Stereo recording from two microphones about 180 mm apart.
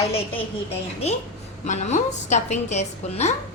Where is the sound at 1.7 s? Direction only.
40° left (ahead or behind).